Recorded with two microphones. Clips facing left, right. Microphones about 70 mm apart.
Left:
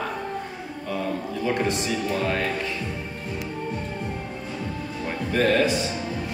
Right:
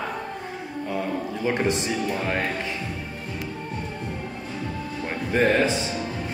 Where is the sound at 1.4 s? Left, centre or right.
Right.